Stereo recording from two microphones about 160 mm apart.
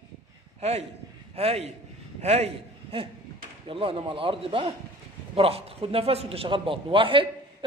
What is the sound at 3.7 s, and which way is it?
A man's voice, 35° right (ahead or behind).